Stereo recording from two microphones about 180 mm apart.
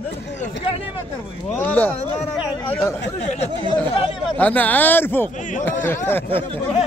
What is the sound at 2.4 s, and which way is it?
Speech, 20° left (ahead or behind).